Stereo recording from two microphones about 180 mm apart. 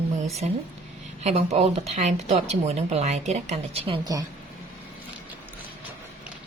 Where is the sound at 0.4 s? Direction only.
35° right (ahead or behind); by 4.3 s 20° right (ahead or behind).